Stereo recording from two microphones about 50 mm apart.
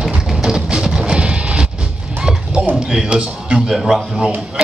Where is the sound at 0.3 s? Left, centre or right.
Centre.